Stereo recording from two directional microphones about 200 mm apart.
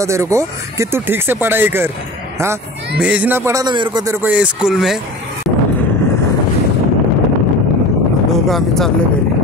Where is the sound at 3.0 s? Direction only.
5° right (ahead or behind).